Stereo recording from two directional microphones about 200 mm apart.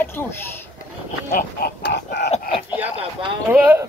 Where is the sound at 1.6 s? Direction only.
60° left (ahead or behind).